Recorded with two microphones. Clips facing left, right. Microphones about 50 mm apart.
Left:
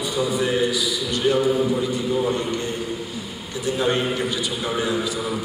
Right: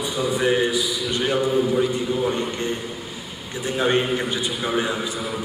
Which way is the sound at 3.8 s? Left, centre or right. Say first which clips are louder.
Right 2 dB; right.